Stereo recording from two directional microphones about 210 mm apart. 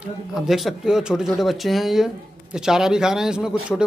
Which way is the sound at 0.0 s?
Centre (ahead or behind).